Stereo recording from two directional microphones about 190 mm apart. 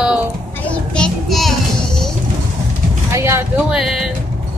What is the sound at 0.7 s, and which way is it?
Child singing, 5° left (ahead or behind).